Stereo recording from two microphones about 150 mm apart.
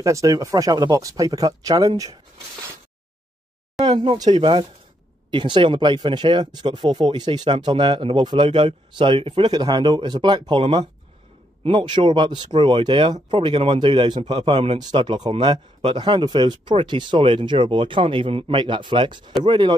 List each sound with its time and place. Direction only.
0.0 s speech: 20° right (ahead or behind)
3.9 s speech: 35° right (ahead or behind)